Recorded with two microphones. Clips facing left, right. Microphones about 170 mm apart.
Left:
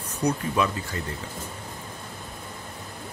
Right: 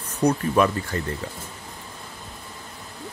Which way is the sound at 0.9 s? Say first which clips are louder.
Right 5 dB; 55° right (ahead or behind).